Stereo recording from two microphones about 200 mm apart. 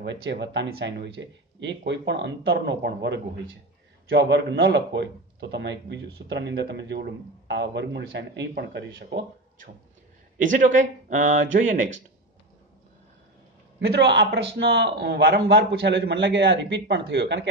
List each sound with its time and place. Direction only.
0.0 s speech: 60° right (ahead or behind)
10.4 s speech: 40° right (ahead or behind)
13.7 s speech: 60° right (ahead or behind)